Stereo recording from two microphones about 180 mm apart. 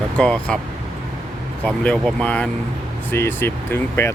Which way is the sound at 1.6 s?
5° left (ahead or behind).